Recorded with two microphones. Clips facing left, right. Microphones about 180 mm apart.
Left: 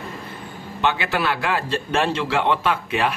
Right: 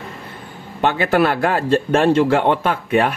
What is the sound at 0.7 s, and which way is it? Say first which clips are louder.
A man's voice: right 6 dB; 45° right (ahead or behind).